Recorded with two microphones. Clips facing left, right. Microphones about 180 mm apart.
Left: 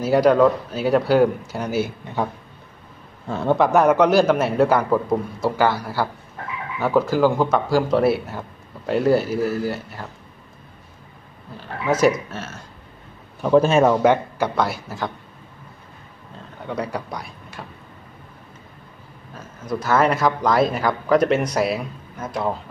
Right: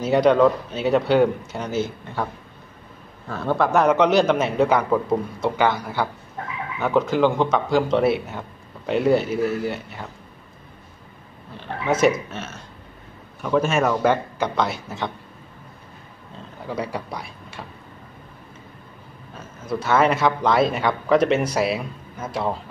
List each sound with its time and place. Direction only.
0.0 s a man's voice: 5° left (ahead or behind)
3.3 s a man's voice: 20° left (ahead or behind); by 10.0 s centre (ahead or behind)
11.8 s a man's voice: centre (ahead or behind)
13.4 s a man's voice: 30° left (ahead or behind)
14.0 s speech: 15° left (ahead or behind)
14.6 s a man's voice: 5° left (ahead or behind)
16.6 s speech: centre (ahead or behind)
19.7 s a man's voice: centre (ahead or behind)